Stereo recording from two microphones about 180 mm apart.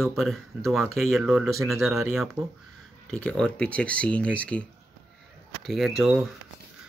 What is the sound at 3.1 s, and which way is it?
Speech, 5° left (ahead or behind).